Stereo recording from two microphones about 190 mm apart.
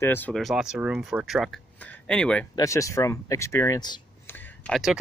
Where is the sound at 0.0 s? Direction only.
10° left (ahead or behind).